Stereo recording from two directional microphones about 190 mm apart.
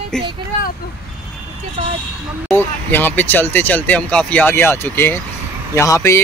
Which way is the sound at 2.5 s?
10° left (ahead or behind).